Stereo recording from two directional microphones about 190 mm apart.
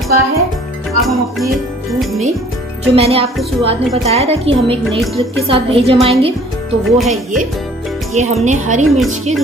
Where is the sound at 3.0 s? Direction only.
30° right (ahead or behind).